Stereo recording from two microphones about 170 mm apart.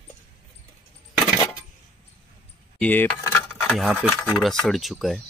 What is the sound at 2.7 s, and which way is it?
Speech, 10° left (ahead or behind).